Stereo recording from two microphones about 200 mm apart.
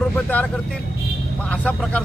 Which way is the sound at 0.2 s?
10° left (ahead or behind).